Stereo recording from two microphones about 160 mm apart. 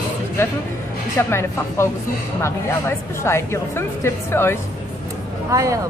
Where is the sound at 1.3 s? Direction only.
15° left (ahead or behind).